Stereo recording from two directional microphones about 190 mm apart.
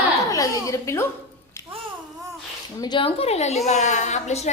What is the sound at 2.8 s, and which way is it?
A woman's voice, 25° left (ahead or behind).